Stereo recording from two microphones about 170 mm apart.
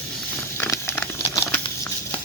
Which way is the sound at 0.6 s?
15° left (ahead or behind).